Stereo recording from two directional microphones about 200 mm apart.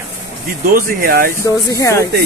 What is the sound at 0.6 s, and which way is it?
Speech, 45° right (ahead or behind).